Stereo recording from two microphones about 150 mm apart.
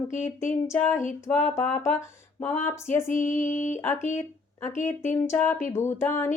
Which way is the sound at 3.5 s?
55° left (ahead or behind).